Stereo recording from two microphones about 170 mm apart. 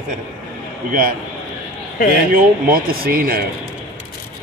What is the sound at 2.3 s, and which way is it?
Speech, 60° right (ahead or behind).